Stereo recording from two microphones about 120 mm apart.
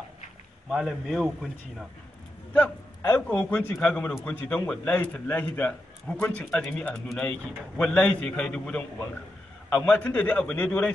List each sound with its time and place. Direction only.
0.7 s a man's voice: centre (ahead or behind)
2.5 s a man's voice: 15° left (ahead or behind)